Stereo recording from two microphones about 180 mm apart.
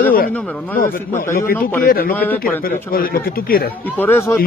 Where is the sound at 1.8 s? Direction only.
55° left (ahead or behind).